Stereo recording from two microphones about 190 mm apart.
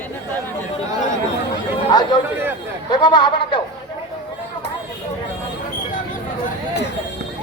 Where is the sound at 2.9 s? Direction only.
25° left (ahead or behind).